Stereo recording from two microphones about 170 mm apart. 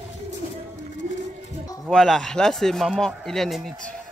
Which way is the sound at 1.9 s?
Centre (ahead or behind).